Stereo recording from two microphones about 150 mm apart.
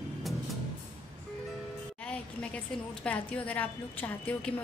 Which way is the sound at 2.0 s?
10° left (ahead or behind).